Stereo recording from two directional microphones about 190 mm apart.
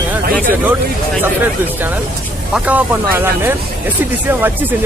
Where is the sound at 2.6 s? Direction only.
10° right (ahead or behind).